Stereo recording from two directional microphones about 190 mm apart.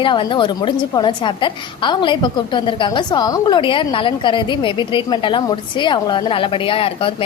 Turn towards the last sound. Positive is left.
turn(degrees=30)  # may be behind; listen again after turning